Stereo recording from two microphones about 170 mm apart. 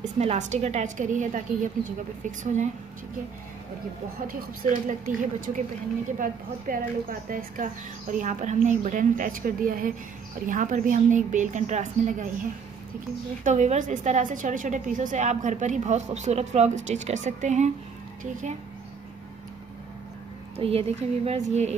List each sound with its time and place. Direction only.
0.0 s a woman's voice: 40° right (ahead or behind)
4.3 s a woman's voice: 50° right (ahead or behind)
13.4 s a woman's voice: 45° right (ahead or behind)
20.5 s a woman's voice: 35° right (ahead or behind)